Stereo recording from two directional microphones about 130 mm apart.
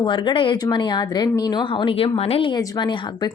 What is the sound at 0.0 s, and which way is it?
A woman's voice, 35° left (ahead or behind).